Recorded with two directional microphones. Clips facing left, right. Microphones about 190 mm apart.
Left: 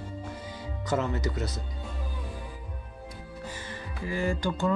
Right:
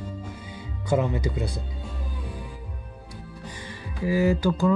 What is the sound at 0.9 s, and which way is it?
Speech, 15° right (ahead or behind).